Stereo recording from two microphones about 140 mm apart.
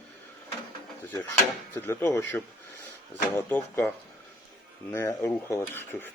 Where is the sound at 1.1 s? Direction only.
20° left (ahead or behind).